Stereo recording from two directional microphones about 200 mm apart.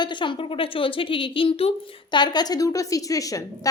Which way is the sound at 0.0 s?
25° left (ahead or behind).